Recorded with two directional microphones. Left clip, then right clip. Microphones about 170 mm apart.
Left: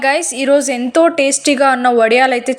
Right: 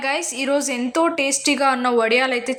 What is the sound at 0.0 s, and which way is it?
A woman's voice, 25° left (ahead or behind).